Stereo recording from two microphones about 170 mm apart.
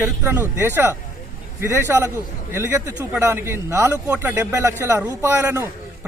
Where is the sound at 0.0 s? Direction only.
15° right (ahead or behind).